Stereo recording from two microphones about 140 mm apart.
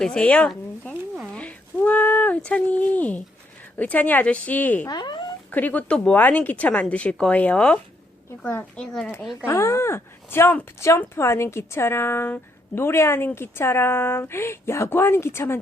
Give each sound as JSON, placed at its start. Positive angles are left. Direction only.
{"t": 0.0, "sound": "speech", "side_deg": 5}
{"t": 1.3, "sound": "a sound", "side_deg": 10}
{"t": 3.8, "sound": "speech", "side_deg": 10}
{"t": 4.9, "sound": "speech", "side_deg": 30}
{"t": 5.5, "sound": "speech", "side_deg": 10}
{"t": 9.1, "sound": "speech", "side_deg": 25}